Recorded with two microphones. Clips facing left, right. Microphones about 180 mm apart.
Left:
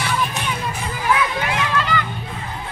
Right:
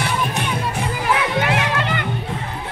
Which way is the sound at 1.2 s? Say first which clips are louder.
Right 2 dB; 65° right (ahead or behind).